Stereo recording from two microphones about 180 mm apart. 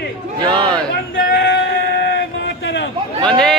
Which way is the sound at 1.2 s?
55° left (ahead or behind).